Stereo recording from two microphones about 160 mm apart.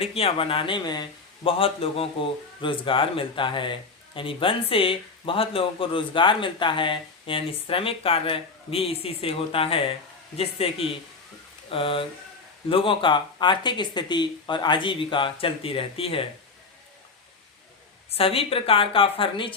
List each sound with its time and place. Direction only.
0.0 s speech: 35° left (ahead or behind)
18.1 s speech: 35° left (ahead or behind)